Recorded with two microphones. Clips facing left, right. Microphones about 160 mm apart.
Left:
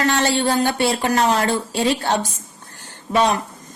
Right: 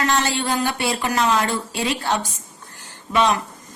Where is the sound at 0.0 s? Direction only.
35° left (ahead or behind).